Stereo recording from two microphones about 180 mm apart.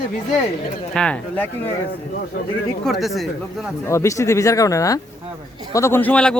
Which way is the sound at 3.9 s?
15° left (ahead or behind).